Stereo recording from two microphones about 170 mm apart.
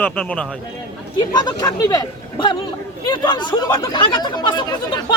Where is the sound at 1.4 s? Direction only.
20° left (ahead or behind).